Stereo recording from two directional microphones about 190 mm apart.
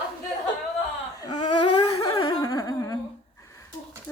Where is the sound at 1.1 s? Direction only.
20° left (ahead or behind).